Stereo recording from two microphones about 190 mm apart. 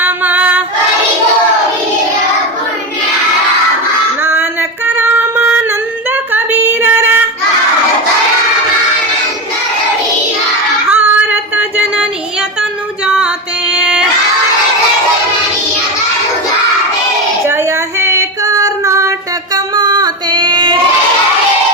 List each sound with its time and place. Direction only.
0.0 s female singing: 10° right (ahead or behind)
4.2 s female singing: 10° right (ahead or behind)
4.9 s music: 10° right (ahead or behind)
6.3 s female singing: 10° right (ahead or behind)
10.9 s female singing: 10° right (ahead or behind)
13.1 s music: 5° right (ahead or behind)
17.4 s child singing: 15° right (ahead or behind)
19.5 s female singing: 20° right (ahead or behind)